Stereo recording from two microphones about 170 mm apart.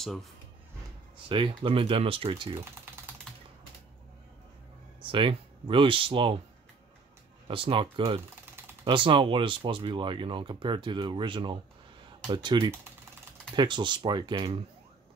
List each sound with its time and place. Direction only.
0.0 s speech: centre (ahead or behind)
1.3 s speech: 30° right (ahead or behind)
5.0 s speech: 30° right (ahead or behind)
7.4 s speech: 30° right (ahead or behind)